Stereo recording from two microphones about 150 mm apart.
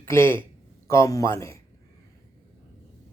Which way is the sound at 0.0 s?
15° left (ahead or behind).